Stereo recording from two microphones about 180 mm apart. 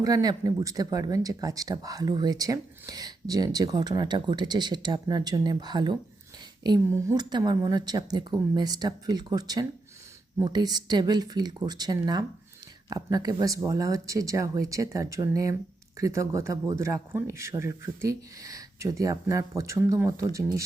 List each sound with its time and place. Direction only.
0.0 s a man's voice: 20° right (ahead or behind)